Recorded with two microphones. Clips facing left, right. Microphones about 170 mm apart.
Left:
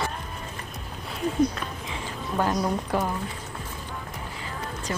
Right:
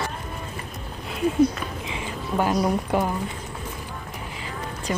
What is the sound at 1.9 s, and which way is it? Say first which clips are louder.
Speech: right 3 dB; 15° right (ahead or behind).